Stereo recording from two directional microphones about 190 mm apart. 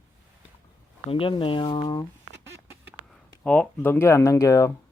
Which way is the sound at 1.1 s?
25° left (ahead or behind).